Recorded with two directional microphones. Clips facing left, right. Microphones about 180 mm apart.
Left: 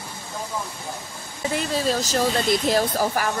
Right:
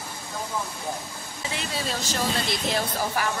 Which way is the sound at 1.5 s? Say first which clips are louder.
Left 8 dB; 40° left (ahead or behind).